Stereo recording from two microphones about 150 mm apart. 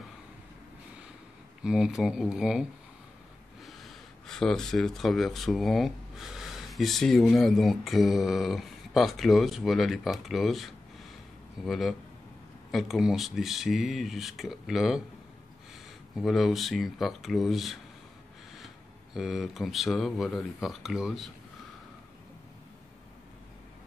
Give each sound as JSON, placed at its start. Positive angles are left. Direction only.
{"t": 1.6, "sound": "speech", "side_deg": -5}
{"t": 3.6, "sound": "speech", "side_deg": 0}
{"t": 16.2, "sound": "speech", "side_deg": 0}
{"t": 19.1, "sound": "speech", "side_deg": -5}